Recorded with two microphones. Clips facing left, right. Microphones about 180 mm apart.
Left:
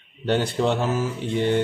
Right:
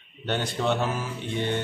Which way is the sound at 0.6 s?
40° left (ahead or behind).